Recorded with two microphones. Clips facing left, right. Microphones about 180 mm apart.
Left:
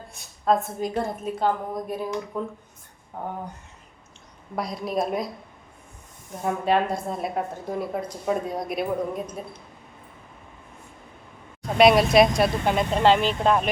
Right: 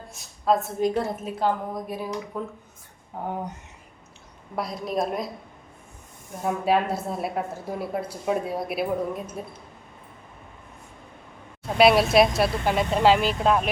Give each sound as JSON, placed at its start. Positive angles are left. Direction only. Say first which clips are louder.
{"t": 0.1, "sound": "a woman's voice", "louder": "even", "side_deg": 0}
{"t": 4.5, "sound": "a woman's voice", "louder": "left 1 dB", "side_deg": 0}
{"t": 6.4, "sound": "a woman's voice", "louder": "even", "side_deg": -5}
{"t": 11.6, "sound": "a woman's voice", "louder": "left 1 dB", "side_deg": -5}